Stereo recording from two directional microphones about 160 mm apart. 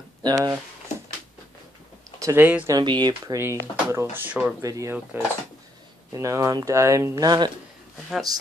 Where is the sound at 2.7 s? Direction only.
25° right (ahead or behind).